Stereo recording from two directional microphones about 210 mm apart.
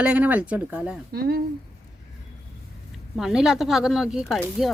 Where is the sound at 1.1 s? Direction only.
45° right (ahead or behind).